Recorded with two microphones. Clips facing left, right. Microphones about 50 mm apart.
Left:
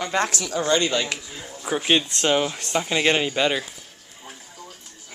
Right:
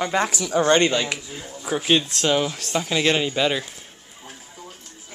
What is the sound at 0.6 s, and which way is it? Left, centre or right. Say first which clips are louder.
Speech: right 3 dB; right.